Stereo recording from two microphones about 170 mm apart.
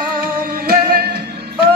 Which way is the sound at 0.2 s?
60° right (ahead or behind).